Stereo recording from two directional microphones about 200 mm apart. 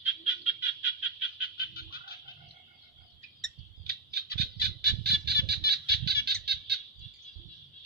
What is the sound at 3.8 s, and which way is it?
Bird, 55° right (ahead or behind).